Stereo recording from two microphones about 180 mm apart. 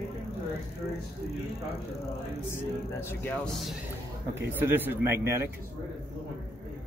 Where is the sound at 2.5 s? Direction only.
10° left (ahead or behind).